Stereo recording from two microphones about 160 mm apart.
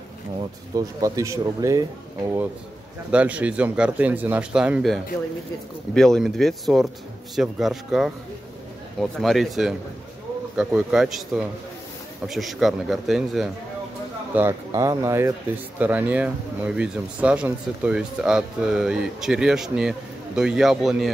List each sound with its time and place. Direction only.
0.7 s speech: 20° right (ahead or behind)
3.1 s speech: 10° right (ahead or behind)
14.7 s speech: 20° right (ahead or behind); by 21.1 s centre (ahead or behind)